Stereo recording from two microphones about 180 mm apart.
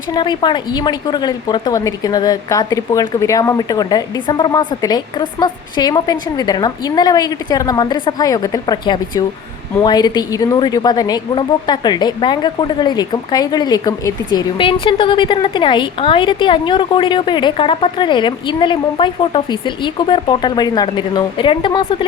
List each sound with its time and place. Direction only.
0.1 s a woman's voice: 25° left (ahead or behind)